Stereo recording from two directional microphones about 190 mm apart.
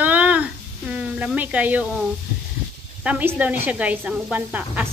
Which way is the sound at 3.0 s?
5° right (ahead or behind).